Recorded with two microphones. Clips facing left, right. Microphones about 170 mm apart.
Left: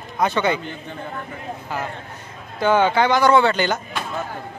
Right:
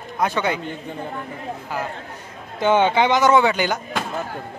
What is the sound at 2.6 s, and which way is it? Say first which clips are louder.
Speech: even; 20° right (ahead or behind).